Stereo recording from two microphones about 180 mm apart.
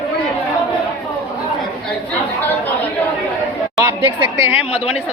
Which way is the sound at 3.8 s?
15° right (ahead or behind).